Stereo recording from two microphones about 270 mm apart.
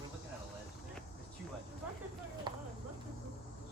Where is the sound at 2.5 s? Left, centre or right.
Centre.